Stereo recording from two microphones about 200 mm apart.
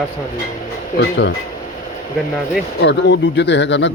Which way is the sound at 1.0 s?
60° left (ahead or behind).